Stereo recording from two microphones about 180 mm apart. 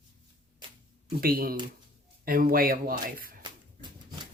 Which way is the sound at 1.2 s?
55° right (ahead or behind).